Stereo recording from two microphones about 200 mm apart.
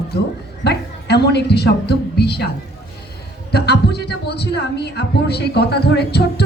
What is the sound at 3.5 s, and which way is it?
A woman's voice, 55° left (ahead or behind).